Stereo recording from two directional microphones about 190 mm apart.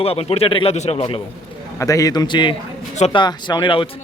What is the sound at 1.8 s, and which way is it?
A man's voice, 15° left (ahead or behind).